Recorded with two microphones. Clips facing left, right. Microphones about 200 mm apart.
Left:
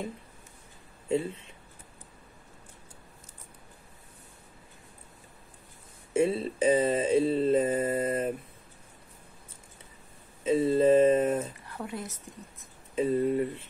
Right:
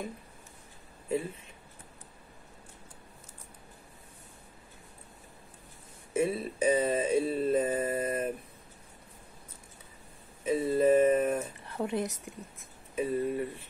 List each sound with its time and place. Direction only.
1.0 s speech: 30° left (ahead or behind)
6.1 s mantra: 30° left (ahead or behind)
10.4 s speech: 25° left (ahead or behind)
11.8 s a woman's voice: 20° right (ahead or behind)
12.9 s mantra: 25° left (ahead or behind)